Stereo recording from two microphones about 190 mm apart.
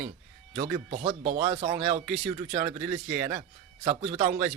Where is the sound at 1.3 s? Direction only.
40° right (ahead or behind).